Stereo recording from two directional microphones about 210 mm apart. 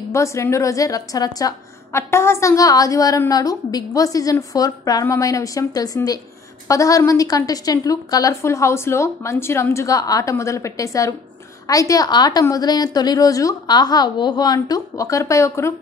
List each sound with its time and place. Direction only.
0.1 s a woman's voice: 15° left (ahead or behind)